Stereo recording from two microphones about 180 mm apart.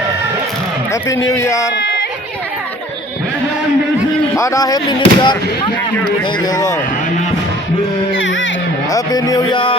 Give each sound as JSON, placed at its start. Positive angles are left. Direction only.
{"t": 1.0, "sound": "speech", "side_deg": 15}
{"t": 4.4, "sound": "speech", "side_deg": 15}
{"t": 8.2, "sound": "baby cry", "side_deg": 90}
{"t": 8.9, "sound": "speech", "side_deg": 20}